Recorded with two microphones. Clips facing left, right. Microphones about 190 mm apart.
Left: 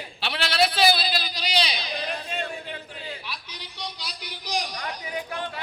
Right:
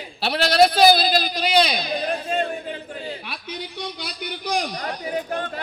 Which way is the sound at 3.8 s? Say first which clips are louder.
Right 6 dB; 55° right (ahead or behind).